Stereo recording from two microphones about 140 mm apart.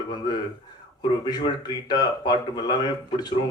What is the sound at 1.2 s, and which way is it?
A man's voice, 30° left (ahead or behind).